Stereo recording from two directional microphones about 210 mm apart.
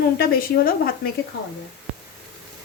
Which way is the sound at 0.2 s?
45° left (ahead or behind).